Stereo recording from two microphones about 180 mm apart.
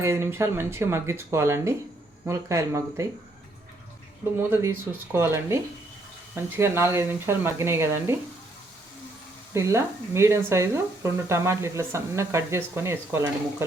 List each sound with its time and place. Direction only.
0.0 s speech: 15° right (ahead or behind)
4.4 s speech: 15° right (ahead or behind)
9.6 s speech: 15° right (ahead or behind)